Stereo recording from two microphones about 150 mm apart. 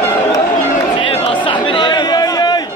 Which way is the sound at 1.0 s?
35° left (ahead or behind).